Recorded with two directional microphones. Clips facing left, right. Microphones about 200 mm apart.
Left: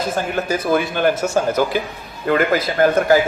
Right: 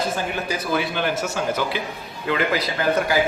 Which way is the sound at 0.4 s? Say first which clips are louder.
Left 6 dB; 45° left (ahead or behind).